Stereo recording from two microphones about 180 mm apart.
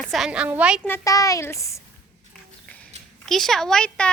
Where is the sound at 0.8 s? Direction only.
15° left (ahead or behind).